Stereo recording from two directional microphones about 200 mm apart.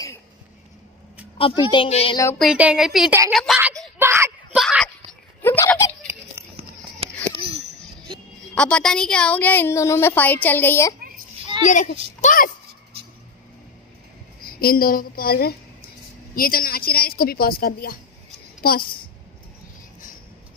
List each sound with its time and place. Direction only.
1.4 s a woman's voice: 25° left (ahead or behind)
2.3 s a woman's voice: 5° right (ahead or behind)
4.0 s whimper: 15° right (ahead or behind)
4.6 s a sound: centre (ahead or behind)
6.5 s a sound: 30° right (ahead or behind)
8.5 s a woman's voice: 5° left (ahead or behind)
11.6 s a child's voice: 40° left (ahead or behind)
14.4 s a woman's voice: 50° left (ahead or behind)